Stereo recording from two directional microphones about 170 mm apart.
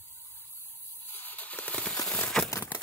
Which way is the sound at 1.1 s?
10° left (ahead or behind).